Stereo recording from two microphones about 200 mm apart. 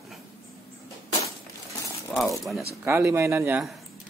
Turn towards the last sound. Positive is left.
turn(degrees=0)  # may be behind; listen again after turning